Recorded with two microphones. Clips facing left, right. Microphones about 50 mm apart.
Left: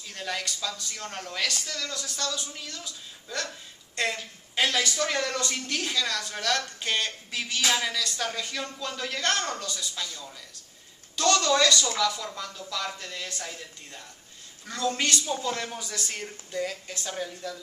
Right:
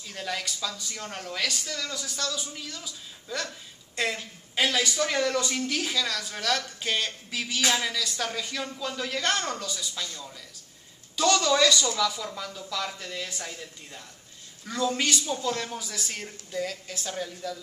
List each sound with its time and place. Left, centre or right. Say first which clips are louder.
0.0 s a woman's voice: even; centre
11.1 s a woman's voice: even; centre
15.2 s a woman's voice: even; centre